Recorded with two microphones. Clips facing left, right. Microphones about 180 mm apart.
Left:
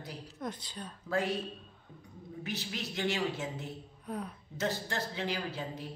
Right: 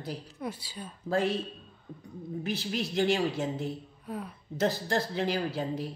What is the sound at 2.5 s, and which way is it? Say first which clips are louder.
Speech: right 6 dB; 30° right (ahead or behind).